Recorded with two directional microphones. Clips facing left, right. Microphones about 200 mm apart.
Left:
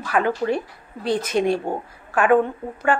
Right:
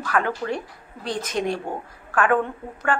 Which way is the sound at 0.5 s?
10° left (ahead or behind).